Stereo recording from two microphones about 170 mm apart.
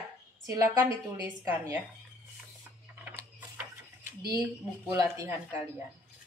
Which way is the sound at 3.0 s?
10° right (ahead or behind).